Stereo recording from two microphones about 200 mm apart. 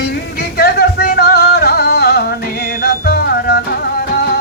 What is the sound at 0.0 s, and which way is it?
Music, 50° left (ahead or behind).